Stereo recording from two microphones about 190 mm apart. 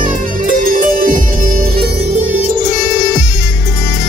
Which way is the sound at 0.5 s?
45° right (ahead or behind).